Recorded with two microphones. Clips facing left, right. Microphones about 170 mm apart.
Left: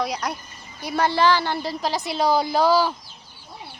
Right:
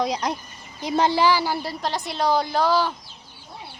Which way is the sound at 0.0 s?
20° right (ahead or behind).